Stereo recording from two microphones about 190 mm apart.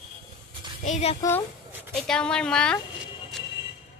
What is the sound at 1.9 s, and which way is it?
Speech, 5° left (ahead or behind).